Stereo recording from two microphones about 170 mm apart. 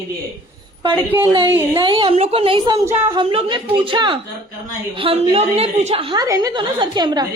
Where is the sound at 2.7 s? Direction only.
15° right (ahead or behind).